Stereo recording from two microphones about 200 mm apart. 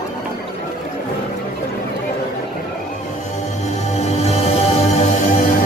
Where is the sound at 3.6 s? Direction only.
30° left (ahead or behind).